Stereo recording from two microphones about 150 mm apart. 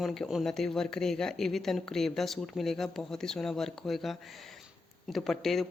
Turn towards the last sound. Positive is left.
turn(degrees=0)  # may be behind; listen again after turning